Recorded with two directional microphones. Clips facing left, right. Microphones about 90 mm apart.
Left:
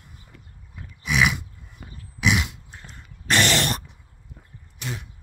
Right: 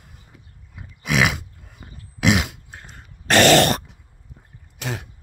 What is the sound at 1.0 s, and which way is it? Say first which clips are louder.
Roar: right 2 dB; 90° right.